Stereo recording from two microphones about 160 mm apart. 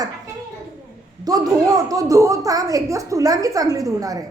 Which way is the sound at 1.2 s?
20° right (ahead or behind).